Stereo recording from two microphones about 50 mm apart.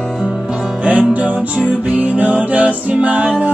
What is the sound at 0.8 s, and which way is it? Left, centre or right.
Music, right.